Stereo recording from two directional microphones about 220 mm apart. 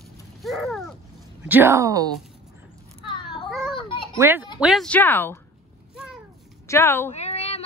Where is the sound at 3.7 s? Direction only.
20° left (ahead or behind).